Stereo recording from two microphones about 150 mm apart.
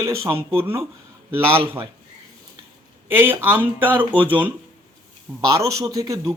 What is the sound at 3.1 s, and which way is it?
Speech, 15° right (ahead or behind).